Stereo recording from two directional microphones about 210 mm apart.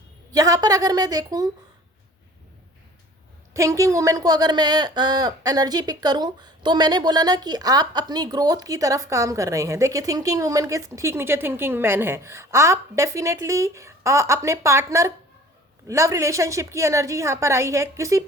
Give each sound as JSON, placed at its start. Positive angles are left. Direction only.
{"t": 0.3, "sound": "speech", "side_deg": -15}
{"t": 3.5, "sound": "speech", "side_deg": -15}